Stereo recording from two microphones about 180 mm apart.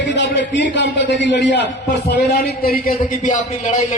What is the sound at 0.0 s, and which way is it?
A man's voice, 80° left.